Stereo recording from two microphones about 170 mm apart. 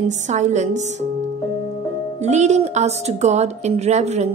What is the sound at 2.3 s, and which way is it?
A woman's voice, 40° right (ahead or behind).